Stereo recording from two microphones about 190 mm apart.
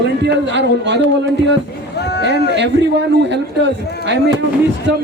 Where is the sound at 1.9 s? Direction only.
60° left (ahead or behind).